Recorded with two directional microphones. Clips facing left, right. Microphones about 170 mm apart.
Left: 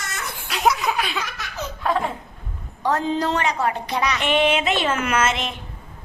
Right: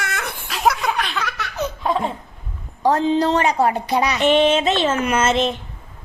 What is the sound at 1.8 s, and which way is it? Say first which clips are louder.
Laughter: even; 20° right (ahead or behind).